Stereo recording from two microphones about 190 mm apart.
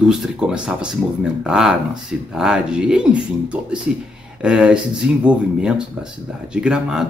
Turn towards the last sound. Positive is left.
turn(degrees=-5)  # may be behind; listen again after turning